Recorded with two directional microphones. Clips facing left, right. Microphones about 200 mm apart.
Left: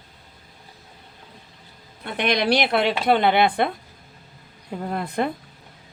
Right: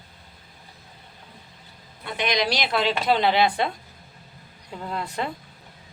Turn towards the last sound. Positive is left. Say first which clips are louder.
# left 5 dB
turn(degrees=55)  # may be behind; listen again after turning